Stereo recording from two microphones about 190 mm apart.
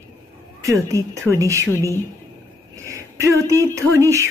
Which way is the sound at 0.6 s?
15° right (ahead or behind).